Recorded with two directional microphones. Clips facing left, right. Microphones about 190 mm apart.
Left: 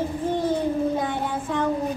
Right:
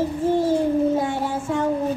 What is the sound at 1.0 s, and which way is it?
Child singing, 25° right (ahead or behind).